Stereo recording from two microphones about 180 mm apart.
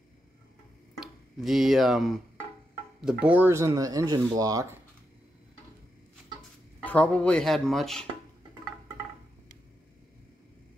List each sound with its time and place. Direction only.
0.9 s speech: centre (ahead or behind); by 4.7 s 20° right (ahead or behind)
6.8 s speech: 10° left (ahead or behind)